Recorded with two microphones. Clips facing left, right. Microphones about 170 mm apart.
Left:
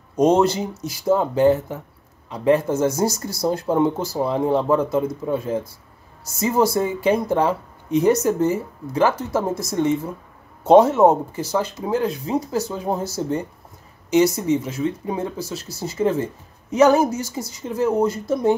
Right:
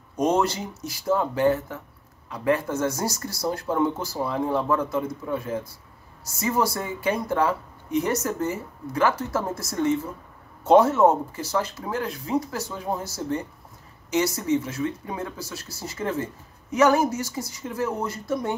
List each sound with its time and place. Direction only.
0.1 s speech: 20° left (ahead or behind)